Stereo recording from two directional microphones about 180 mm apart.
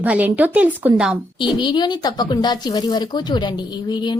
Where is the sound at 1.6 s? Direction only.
25° left (ahead or behind).